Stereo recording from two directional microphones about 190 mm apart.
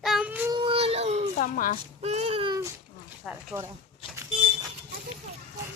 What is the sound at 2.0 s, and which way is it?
Child singing, 35° right (ahead or behind).